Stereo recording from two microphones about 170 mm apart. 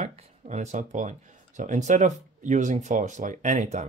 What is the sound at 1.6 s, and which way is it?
Speech, 45° right (ahead or behind).